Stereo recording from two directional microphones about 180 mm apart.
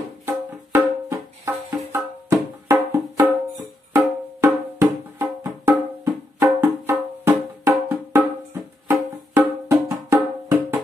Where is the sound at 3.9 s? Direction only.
15° right (ahead or behind).